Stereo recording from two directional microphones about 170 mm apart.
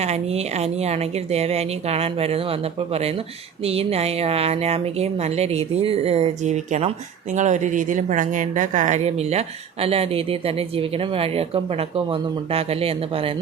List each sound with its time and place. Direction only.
0.0 s speech: 40° right (ahead or behind)